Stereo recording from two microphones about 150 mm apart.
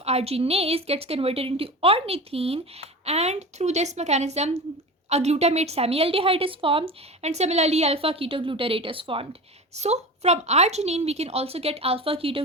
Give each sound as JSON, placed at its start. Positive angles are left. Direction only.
{"t": 0.0, "sound": "a woman's voice", "side_deg": -45}
{"t": 9.7, "sound": "a woman's voice", "side_deg": -45}